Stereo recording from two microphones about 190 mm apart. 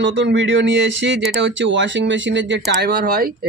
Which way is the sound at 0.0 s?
75° right (ahead or behind).